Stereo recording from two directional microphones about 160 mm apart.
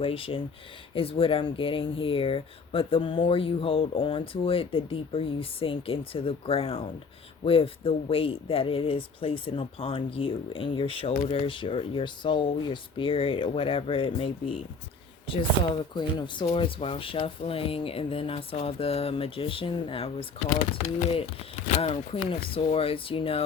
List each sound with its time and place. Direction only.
0.0 s speech: 35° left (ahead or behind)